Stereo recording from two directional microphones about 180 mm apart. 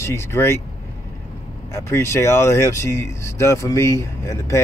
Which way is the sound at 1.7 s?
15° left (ahead or behind).